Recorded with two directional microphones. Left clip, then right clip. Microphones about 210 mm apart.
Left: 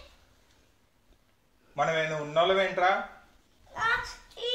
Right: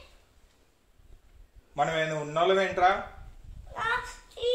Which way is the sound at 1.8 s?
35° right (ahead or behind).